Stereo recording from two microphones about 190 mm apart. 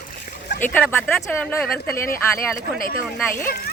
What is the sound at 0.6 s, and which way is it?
Speech, 10° left (ahead or behind).